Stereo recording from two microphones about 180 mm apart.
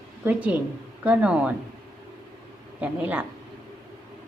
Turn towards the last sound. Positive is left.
turn(degrees=-10)  # may be behind; listen again after turning